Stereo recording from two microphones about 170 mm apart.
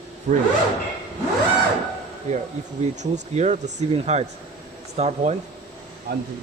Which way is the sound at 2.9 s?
45° right (ahead or behind).